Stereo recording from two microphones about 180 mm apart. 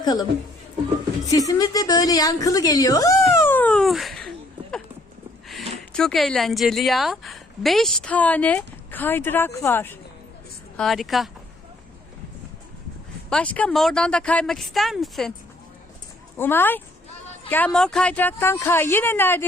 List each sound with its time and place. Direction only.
0.0 s speech: 20° left (ahead or behind)
1.3 s a woman's voice: 20° left (ahead or behind)
3.4 s a sound: 10° left (ahead or behind)
5.9 s a woman's voice: 5° left (ahead or behind)
10.8 s a woman's voice: centre (ahead or behind)
13.3 s a woman's voice: 5° left (ahead or behind)
16.4 s speech: 10° left (ahead or behind)